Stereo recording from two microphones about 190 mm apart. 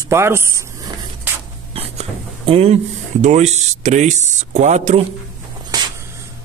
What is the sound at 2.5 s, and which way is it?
Speech, 30° right (ahead or behind).